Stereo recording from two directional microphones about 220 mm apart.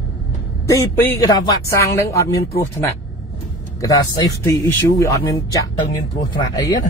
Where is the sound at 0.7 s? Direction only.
10° left (ahead or behind).